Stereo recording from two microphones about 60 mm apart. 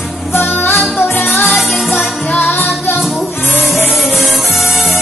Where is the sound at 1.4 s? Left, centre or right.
Centre.